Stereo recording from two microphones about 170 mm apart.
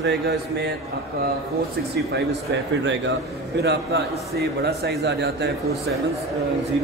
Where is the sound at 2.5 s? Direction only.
90° right.